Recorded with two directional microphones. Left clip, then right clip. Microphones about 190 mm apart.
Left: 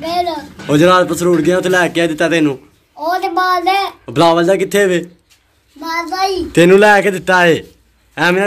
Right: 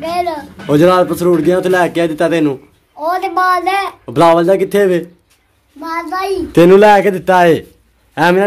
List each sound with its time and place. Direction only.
0.0 s a child's voice: 5° right (ahead or behind)
6.5 s a child's voice: 15° right (ahead or behind)